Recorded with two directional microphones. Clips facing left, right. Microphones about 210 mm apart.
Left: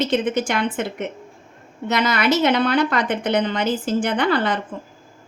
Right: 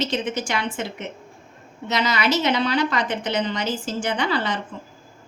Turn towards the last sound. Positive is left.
turn(degrees=55)  # may be behind; listen again after turning